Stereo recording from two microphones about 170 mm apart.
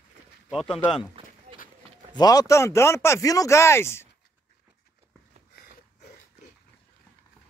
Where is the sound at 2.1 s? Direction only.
20° left (ahead or behind).